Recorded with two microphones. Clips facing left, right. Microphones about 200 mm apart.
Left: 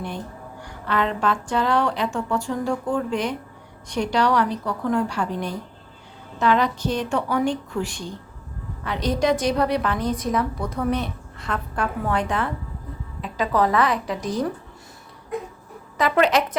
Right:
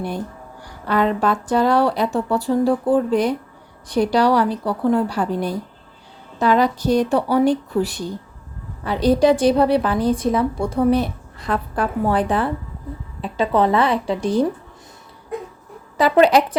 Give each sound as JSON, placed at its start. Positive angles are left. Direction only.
{"t": 0.6, "sound": "a woman's voice", "side_deg": -40}
{"t": 16.0, "sound": "a woman's voice", "side_deg": -30}